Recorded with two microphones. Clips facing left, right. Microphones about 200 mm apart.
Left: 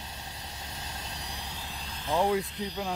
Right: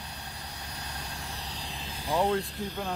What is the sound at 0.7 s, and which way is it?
Vehicle, 25° left (ahead or behind).